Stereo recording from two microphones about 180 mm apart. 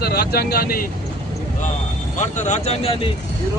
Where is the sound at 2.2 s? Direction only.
40° left (ahead or behind).